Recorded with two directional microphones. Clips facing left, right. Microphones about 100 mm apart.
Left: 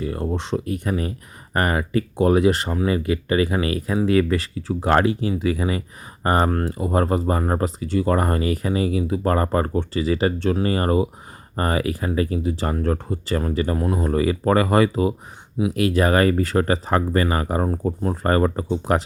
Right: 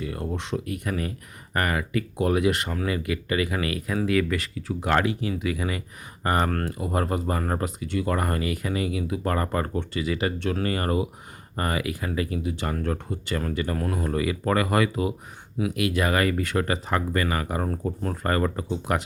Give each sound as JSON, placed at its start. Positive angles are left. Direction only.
{"t": 0.0, "sound": "speech", "side_deg": 35}
{"t": 13.7, "sound": "speech", "side_deg": 20}